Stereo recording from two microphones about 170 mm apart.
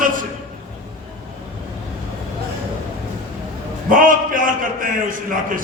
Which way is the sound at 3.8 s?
50° right (ahead or behind).